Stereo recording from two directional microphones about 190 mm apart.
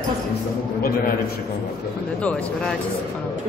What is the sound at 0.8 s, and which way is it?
Speech, 50° left (ahead or behind).